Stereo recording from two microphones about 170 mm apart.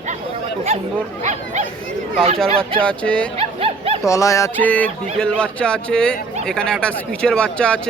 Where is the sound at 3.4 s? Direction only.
35° right (ahead or behind).